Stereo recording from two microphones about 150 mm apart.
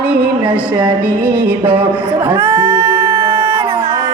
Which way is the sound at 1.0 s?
15° right (ahead or behind).